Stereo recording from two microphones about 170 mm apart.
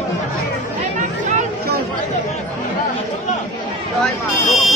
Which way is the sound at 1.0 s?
45° right (ahead or behind).